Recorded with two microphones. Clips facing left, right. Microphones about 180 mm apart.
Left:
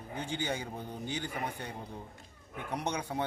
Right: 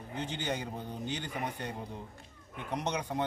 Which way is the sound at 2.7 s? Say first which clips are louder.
Right 1 dB; 10° left (ahead or behind).